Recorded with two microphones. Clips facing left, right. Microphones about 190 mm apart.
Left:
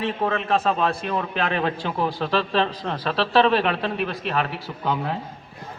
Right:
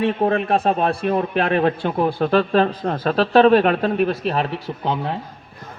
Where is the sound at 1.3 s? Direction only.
50° right (ahead or behind).